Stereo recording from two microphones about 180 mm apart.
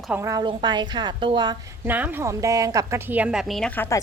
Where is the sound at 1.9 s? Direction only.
10° right (ahead or behind); by 4.0 s 10° left (ahead or behind).